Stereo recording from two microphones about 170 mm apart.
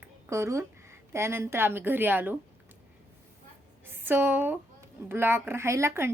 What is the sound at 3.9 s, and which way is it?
A woman's voice, 10° right (ahead or behind).